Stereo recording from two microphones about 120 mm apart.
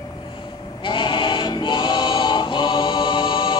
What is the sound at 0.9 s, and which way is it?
Choir, 40° left (ahead or behind).